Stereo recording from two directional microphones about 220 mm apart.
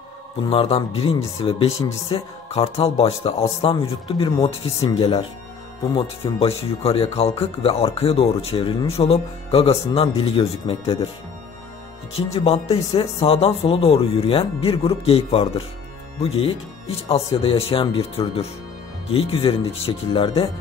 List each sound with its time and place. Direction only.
0.4 s speech: 25° left (ahead or behind)
12.4 s speech: 30° left (ahead or behind)